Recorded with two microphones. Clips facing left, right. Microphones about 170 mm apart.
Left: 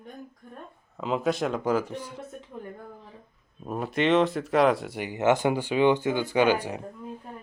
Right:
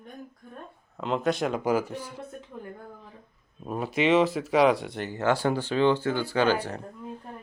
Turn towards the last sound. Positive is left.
turn(degrees=15)  # may be behind; listen again after turning